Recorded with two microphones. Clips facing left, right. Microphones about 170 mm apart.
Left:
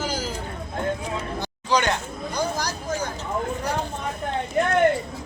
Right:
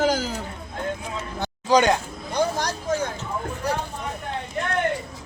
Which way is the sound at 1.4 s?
45° right (ahead or behind).